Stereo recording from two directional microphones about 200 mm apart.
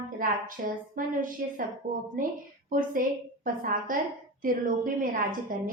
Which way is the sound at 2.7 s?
45° right (ahead or behind).